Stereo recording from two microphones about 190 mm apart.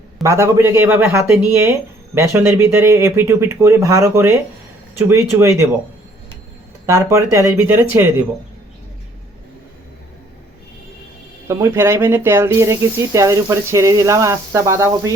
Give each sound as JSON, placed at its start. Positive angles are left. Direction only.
{"t": 0.2, "sound": "speech", "side_deg": -15}
{"t": 6.8, "sound": "speech", "side_deg": -15}
{"t": 11.4, "sound": "speech", "side_deg": -15}